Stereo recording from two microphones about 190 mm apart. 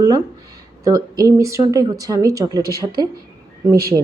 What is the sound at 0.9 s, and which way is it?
A woman's voice, 20° right (ahead or behind).